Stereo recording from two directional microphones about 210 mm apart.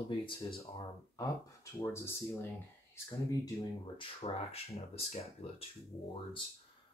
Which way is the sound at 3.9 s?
30° left (ahead or behind).